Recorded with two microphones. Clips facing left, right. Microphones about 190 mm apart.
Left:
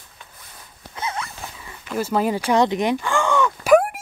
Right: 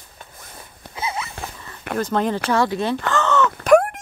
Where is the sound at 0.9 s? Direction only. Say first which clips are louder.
Right 1 dB; 5° right (ahead or behind).